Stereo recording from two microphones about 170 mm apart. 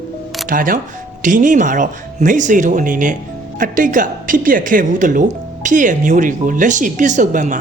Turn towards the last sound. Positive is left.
turn(degrees=-50)  # may be behind; listen again after turning